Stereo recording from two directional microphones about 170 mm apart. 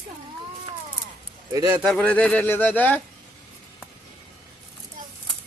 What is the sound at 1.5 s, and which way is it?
Speech, 20° right (ahead or behind).